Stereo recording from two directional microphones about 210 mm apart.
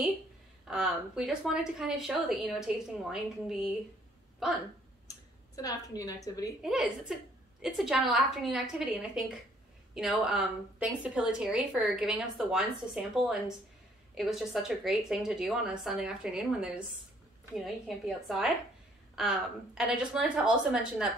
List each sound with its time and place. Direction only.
0.7 s a woman's voice: 5° right (ahead or behind)
5.6 s a woman's voice: 15° left (ahead or behind)
6.6 s a woman's voice: centre (ahead or behind)